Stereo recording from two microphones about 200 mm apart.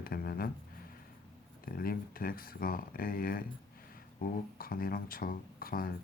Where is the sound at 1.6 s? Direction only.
50° left (ahead or behind).